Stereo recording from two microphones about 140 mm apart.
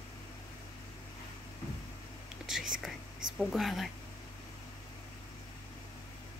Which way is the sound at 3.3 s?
Centre (ahead or behind).